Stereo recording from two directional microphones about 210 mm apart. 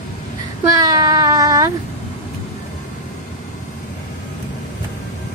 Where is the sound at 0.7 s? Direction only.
15° right (ahead or behind).